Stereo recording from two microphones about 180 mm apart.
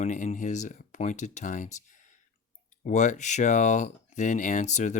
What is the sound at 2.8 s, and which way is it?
Speech, 40° left (ahead or behind).